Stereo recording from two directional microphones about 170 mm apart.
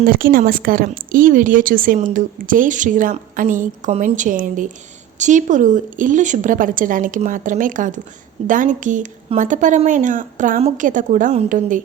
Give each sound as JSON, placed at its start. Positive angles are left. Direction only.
{"t": 0.0, "sound": "a woman's voice", "side_deg": -55}